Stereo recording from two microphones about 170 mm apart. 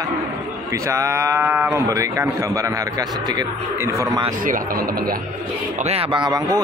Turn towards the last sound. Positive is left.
turn(degrees=-25)  # may be behind; listen again after turning